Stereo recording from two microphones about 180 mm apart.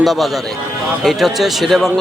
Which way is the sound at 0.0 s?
Centre (ahead or behind).